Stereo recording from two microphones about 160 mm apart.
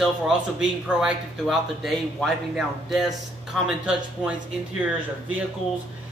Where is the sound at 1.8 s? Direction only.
Centre (ahead or behind).